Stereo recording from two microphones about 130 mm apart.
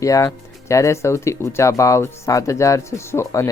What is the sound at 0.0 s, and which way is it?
Speech, 25° left (ahead or behind).